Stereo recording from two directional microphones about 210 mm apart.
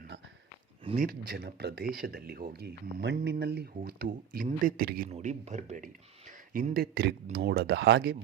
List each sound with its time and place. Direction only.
0.9 s speech: 45° right (ahead or behind)
5.0 s speech: 30° right (ahead or behind); by 8.1 s 55° right (ahead or behind)